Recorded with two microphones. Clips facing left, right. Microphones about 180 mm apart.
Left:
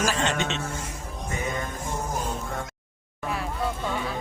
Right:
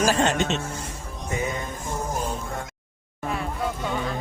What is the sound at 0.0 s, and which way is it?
Speech, 40° right (ahead or behind).